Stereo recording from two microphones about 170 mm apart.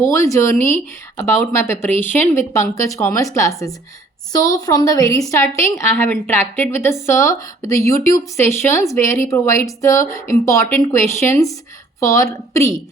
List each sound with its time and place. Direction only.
0.0 s a woman's voice: 15° left (ahead or behind)